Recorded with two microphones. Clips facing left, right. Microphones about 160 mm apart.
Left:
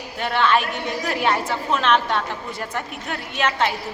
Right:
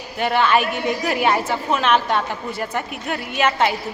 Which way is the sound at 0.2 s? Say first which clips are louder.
Right 2 dB; 5° right (ahead or behind).